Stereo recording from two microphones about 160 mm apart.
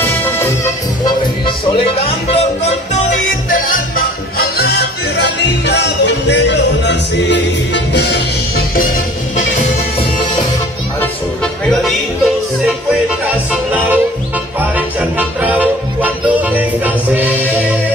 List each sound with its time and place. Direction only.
0.0 s music: 15° left (ahead or behind)
1.0 s music: 30° left (ahead or behind)
3.4 s music: 60° left (ahead or behind)
4.4 s music: 85° left
13.5 s music: 10° right (ahead or behind)